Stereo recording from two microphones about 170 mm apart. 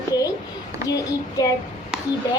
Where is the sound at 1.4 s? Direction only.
20° left (ahead or behind).